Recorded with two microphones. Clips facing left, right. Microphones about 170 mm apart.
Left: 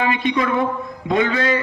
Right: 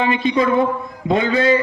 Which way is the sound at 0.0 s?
30° right (ahead or behind).